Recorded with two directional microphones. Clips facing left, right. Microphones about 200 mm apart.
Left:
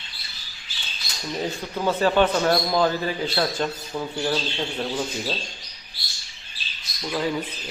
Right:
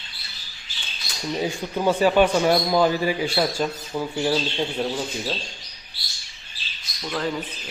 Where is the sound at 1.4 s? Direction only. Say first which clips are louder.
Right 2 dB; 10° right (ahead or behind).